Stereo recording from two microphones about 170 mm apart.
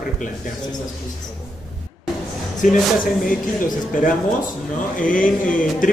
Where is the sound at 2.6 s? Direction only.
50° left (ahead or behind).